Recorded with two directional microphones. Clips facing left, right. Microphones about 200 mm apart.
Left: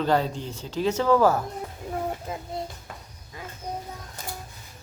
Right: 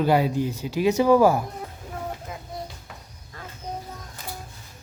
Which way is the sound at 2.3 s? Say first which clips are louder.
Left 4 dB; 25° left (ahead or behind).